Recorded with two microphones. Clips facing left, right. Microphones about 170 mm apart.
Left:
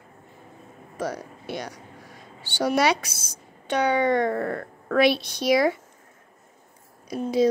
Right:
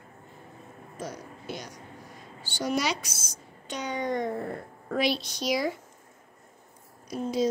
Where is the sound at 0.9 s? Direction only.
70° left (ahead or behind).